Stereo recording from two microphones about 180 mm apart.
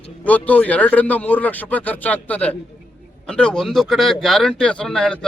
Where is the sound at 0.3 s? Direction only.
10° left (ahead or behind).